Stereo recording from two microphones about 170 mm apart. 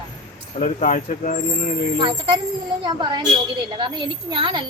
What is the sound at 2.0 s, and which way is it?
A woman's voice, 30° right (ahead or behind).